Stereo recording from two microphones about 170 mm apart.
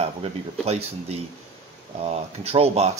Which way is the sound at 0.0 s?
35° right (ahead or behind).